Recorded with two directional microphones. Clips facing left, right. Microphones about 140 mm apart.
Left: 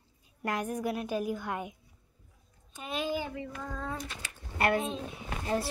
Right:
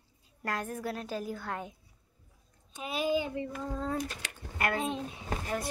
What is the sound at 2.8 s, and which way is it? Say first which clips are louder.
Speech: right 3 dB; 10° right (ahead or behind).